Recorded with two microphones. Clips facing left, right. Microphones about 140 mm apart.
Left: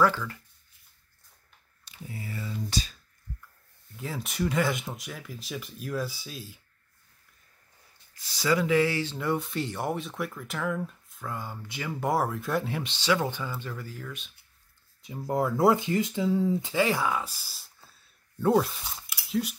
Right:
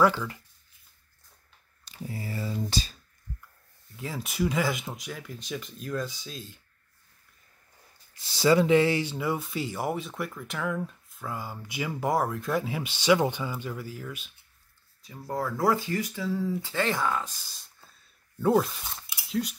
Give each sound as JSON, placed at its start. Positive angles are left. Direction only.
{"t": 0.0, "sound": "speech", "side_deg": -15}
{"t": 1.9, "sound": "a sound", "side_deg": -35}
{"t": 3.9, "sound": "speech", "side_deg": 0}
{"t": 8.1, "sound": "speech", "side_deg": -25}
{"t": 12.0, "sound": "speech", "side_deg": 0}
{"t": 15.0, "sound": "speech", "side_deg": 20}